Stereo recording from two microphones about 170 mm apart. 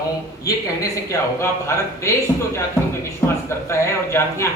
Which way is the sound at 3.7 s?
15° left (ahead or behind).